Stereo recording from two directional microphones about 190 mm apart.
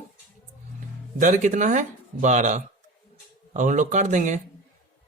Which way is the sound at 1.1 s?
40° right (ahead or behind).